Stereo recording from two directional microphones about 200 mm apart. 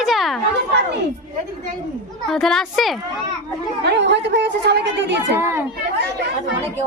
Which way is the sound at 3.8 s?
60° right (ahead or behind).